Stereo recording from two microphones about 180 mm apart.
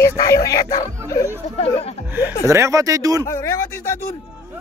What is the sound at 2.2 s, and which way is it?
A man's voice, 15° right (ahead or behind).